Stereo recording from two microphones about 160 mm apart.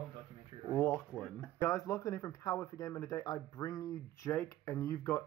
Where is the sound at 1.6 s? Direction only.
20° left (ahead or behind).